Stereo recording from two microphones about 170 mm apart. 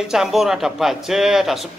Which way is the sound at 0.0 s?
5° right (ahead or behind).